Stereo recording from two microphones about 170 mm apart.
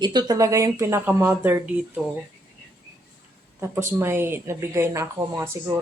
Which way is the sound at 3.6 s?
15° right (ahead or behind).